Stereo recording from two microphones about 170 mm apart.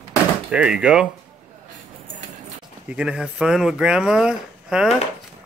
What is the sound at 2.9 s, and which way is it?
Speech, 5° right (ahead or behind).